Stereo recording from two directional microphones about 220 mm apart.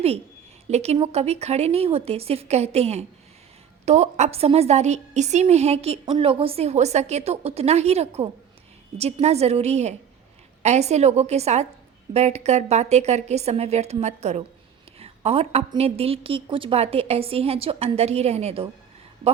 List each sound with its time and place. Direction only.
0.7 s a woman's voice: 30° right (ahead or behind)